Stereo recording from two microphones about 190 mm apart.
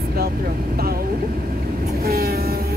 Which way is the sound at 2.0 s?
55° right (ahead or behind).